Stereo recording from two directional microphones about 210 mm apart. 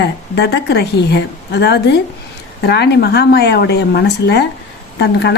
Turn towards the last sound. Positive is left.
turn(degrees=55)  # may be behind; listen again after turning